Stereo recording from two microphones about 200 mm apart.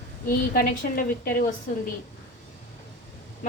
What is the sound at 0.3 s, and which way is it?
A woman's voice, 45° left (ahead or behind).